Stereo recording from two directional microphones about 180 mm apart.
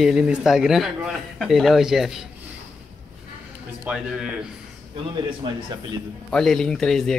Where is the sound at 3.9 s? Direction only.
5° right (ahead or behind).